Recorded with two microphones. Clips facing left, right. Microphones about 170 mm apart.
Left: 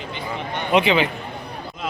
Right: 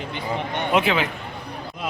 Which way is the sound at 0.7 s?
Centre (ahead or behind).